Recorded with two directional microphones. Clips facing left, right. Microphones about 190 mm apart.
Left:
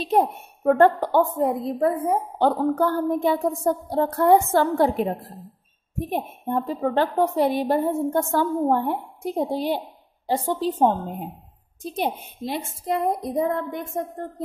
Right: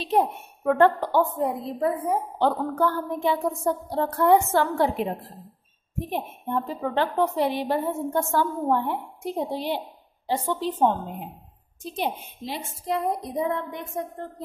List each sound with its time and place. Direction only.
0.0 s a woman's voice: 45° left (ahead or behind)